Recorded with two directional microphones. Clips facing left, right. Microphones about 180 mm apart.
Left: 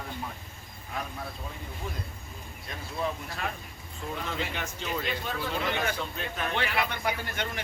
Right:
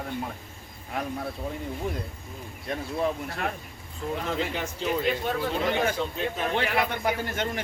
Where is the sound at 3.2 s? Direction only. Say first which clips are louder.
Right 4 dB; 55° right (ahead or behind).